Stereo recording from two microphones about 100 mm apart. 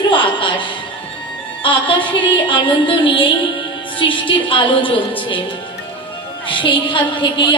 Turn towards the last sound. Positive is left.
turn(degrees=55)  # may be behind; listen again after turning